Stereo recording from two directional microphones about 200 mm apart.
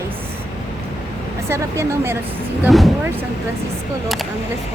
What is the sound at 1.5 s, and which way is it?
Speech, 15° right (ahead or behind).